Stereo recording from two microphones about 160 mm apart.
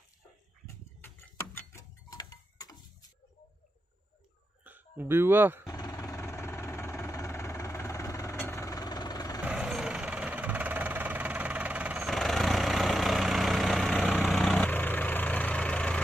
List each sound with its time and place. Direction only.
1.0 s a sound: 15° left (ahead or behind)
4.6 s speech: 10° right (ahead or behind)
5.7 s vehicle: 25° left (ahead or behind)
9.4 s vehicle: 10° right (ahead or behind); by 16.0 s 10° left (ahead or behind)